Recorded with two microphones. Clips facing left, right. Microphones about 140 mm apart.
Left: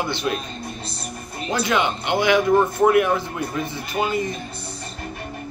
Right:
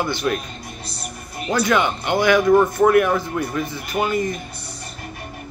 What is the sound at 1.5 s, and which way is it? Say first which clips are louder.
Speech: right 3 dB; 20° left (ahead or behind).